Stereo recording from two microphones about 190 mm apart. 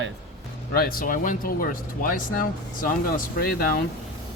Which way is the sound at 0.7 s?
50° left (ahead or behind).